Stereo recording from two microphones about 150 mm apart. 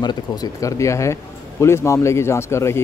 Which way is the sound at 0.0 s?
25° left (ahead or behind).